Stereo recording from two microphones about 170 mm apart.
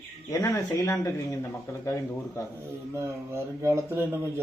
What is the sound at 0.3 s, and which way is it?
Speech, 20° left (ahead or behind).